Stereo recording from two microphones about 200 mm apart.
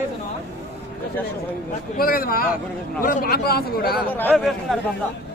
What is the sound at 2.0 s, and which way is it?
Speech, 45° left (ahead or behind).